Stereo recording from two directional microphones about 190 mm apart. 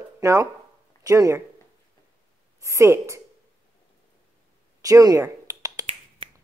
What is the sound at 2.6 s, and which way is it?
Speech, 15° right (ahead or behind).